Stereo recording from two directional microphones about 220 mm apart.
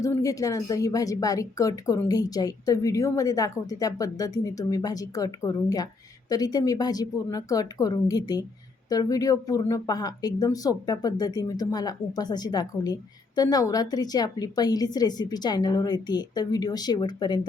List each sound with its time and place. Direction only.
0.0 s speech: 15° left (ahead or behind)